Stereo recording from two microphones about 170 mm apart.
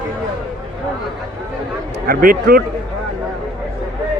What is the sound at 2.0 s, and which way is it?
Speech, 60° right (ahead or behind).